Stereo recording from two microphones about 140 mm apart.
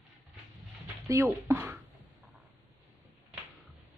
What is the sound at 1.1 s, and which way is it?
Speech, 20° right (ahead or behind).